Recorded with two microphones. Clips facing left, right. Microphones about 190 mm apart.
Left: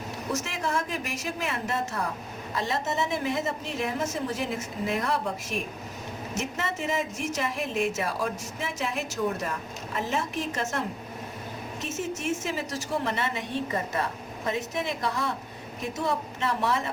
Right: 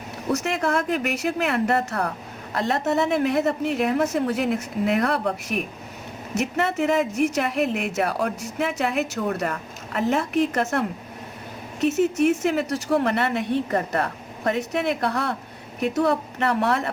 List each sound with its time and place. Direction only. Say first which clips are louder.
0.3 s speech: right 6 dB; 65° right (ahead or behind)